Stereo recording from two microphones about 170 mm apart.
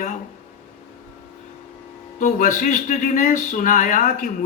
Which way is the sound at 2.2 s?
50° left (ahead or behind).